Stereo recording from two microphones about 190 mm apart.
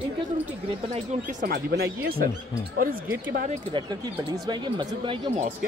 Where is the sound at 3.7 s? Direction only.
25° right (ahead or behind).